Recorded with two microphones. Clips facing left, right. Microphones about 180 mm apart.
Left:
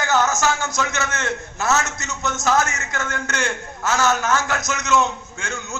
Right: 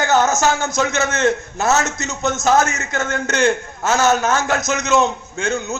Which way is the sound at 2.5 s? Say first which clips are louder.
Right 4 dB; 40° right (ahead or behind).